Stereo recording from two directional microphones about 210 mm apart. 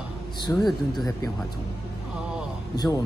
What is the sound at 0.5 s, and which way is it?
Speech, 15° left (ahead or behind).